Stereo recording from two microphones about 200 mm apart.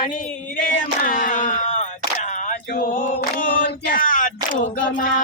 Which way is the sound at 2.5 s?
45° left (ahead or behind).